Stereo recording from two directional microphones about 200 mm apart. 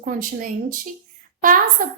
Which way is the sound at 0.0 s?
45° right (ahead or behind).